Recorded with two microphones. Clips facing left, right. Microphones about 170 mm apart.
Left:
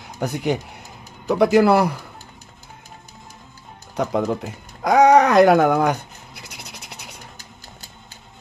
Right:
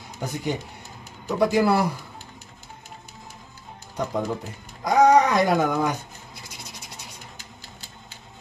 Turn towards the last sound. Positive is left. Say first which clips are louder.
# left 2 dB
turn(degrees=70)  # may be behind; listen again after turning